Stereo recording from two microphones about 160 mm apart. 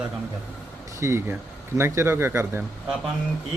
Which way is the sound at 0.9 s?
15° right (ahead or behind).